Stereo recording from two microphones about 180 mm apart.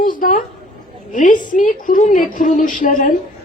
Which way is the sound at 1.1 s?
45° left (ahead or behind).